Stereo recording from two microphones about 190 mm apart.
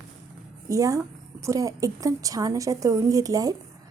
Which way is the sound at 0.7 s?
15° right (ahead or behind).